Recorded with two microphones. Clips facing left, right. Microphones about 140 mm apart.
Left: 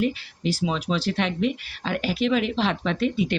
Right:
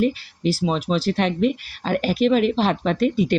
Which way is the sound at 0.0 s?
40° right (ahead or behind).